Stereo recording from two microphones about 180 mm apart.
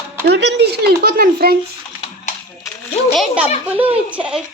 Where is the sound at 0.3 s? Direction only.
75° right (ahead or behind); by 1.5 s 60° right (ahead or behind).